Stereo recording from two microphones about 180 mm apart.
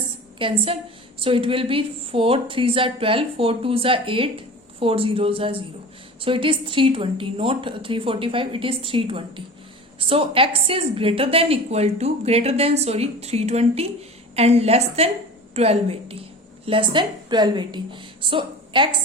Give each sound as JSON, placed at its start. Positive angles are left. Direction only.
{"t": 0.3, "sound": "a woman's voice", "side_deg": -30}